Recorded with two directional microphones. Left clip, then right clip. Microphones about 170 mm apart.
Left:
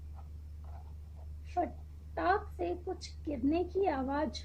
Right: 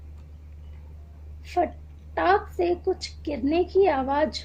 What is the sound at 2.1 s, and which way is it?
A woman's voice, 30° right (ahead or behind).